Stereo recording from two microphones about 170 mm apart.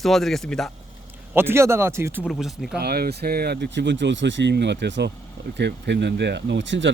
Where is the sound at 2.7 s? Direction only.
65° right (ahead or behind).